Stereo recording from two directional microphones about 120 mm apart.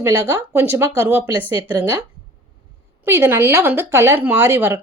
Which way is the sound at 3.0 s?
20° right (ahead or behind).